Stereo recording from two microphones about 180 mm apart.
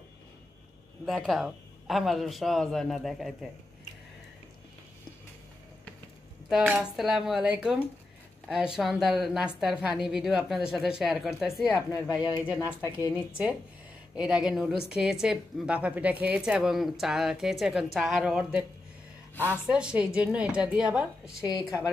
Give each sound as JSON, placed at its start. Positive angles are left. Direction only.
{"t": 1.0, "sound": "a woman's voice", "side_deg": 0}
{"t": 6.5, "sound": "a woman's voice", "side_deg": -5}
{"t": 12.8, "sound": "a woman's voice", "side_deg": 20}
{"t": 13.1, "sound": "a woman's voice", "side_deg": -5}
{"t": 21.4, "sound": "a woman's voice", "side_deg": 20}